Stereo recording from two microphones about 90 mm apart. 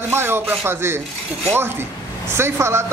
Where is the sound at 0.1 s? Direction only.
25° right (ahead or behind).